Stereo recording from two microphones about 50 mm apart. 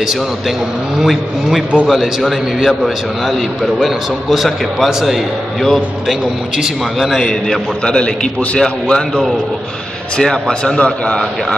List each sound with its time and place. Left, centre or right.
0.9 s a man's voice: centre
6.5 s a man's voice: centre
7.2 s a man's voice: centre